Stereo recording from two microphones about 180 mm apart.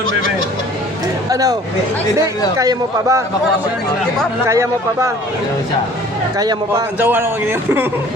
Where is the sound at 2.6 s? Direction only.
15° right (ahead or behind).